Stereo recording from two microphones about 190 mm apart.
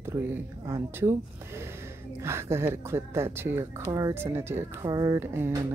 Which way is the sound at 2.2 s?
15° right (ahead or behind).